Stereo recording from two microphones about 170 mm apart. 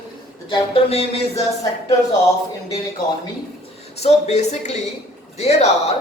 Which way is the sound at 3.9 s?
40° left (ahead or behind).